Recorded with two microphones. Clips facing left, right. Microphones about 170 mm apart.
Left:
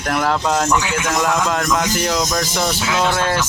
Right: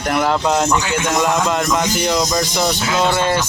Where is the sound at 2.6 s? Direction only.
Centre (ahead or behind).